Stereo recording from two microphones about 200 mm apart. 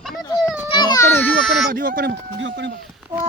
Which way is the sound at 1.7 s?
45° right (ahead or behind).